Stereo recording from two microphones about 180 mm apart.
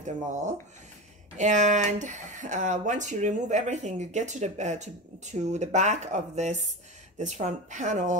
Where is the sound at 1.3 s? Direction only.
40° right (ahead or behind).